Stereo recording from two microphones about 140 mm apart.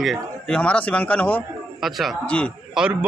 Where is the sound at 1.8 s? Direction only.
Centre (ahead or behind).